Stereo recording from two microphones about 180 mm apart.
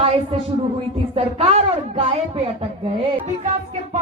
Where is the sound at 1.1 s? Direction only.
35° right (ahead or behind).